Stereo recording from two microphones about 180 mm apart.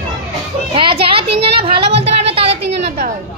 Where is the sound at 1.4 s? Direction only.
30° right (ahead or behind).